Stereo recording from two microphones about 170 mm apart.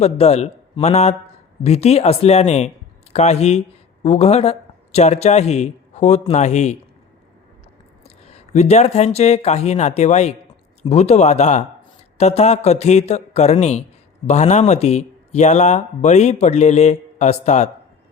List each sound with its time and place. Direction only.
0.0 s speech: 40° left (ahead or behind)
8.0 s speech: 40° left (ahead or behind)